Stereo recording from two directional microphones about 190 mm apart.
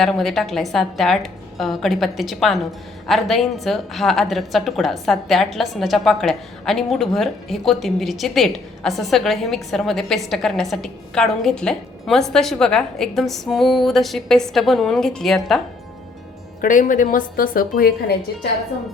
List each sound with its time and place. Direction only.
0.0 s a woman's voice: centre (ahead or behind)
16.6 s a woman's voice: 45° left (ahead or behind)